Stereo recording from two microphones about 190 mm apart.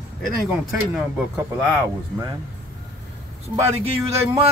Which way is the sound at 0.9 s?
5° right (ahead or behind).